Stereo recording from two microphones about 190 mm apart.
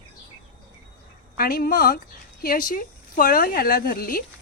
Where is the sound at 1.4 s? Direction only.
50° left (ahead or behind).